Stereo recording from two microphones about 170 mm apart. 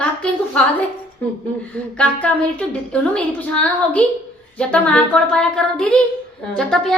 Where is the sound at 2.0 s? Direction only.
5° left (ahead or behind).